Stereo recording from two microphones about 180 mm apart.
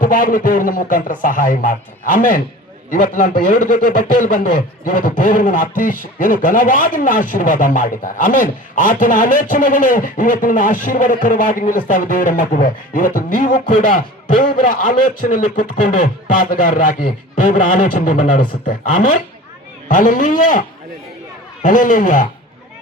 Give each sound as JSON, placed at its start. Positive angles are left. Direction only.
{"t": 0.0, "sound": "a man's voice", "side_deg": 50}